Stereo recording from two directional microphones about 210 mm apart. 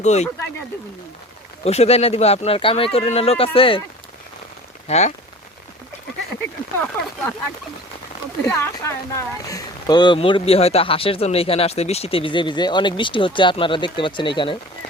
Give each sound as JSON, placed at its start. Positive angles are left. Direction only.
{"t": 0.0, "sound": "speech", "side_deg": 30}
{"t": 1.6, "sound": "speech", "side_deg": 30}
{"t": 4.9, "sound": "speech", "side_deg": 30}
{"t": 7.0, "sound": "speech", "side_deg": 10}
{"t": 8.4, "sound": "speech", "side_deg": 10}